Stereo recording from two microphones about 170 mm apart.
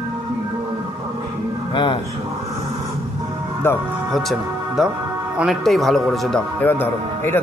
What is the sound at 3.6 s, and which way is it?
Speech, 15° left (ahead or behind).